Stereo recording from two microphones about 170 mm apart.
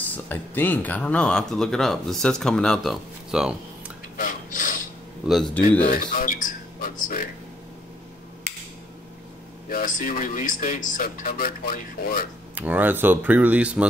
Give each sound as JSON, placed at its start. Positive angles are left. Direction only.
{"t": 0.3, "sound": "speech", "side_deg": 10}
{"t": 4.2, "sound": "a sound", "side_deg": 50}
{"t": 5.2, "sound": "speech", "side_deg": 0}
{"t": 5.9, "sound": "speech", "side_deg": 55}
{"t": 9.7, "sound": "speech", "side_deg": 55}
{"t": 12.5, "sound": "speech", "side_deg": -10}